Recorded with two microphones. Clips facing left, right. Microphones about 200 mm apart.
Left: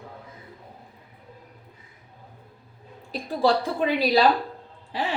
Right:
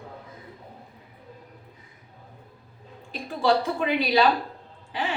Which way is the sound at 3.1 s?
35° left (ahead or behind).